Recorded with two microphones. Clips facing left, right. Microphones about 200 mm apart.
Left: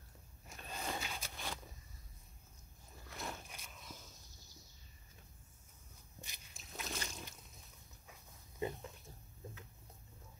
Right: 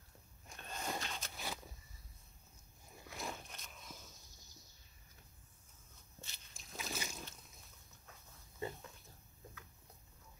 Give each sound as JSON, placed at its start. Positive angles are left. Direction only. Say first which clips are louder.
{"t": 0.5, "sound": "a sound", "louder": "even", "side_deg": 5}
{"t": 1.3, "sound": "vehicle", "louder": "even", "side_deg": -5}
{"t": 3.1, "sound": "biting", "louder": "right 1 dB", "side_deg": 0}
{"t": 3.5, "sound": "walk", "louder": "even", "side_deg": 10}
{"t": 6.2, "sound": "a sound", "louder": "left 1 dB", "side_deg": 15}
{"t": 6.6, "sound": "boat", "louder": "even", "side_deg": 0}
{"t": 8.1, "sound": "dog", "louder": "left 1 dB", "side_deg": 15}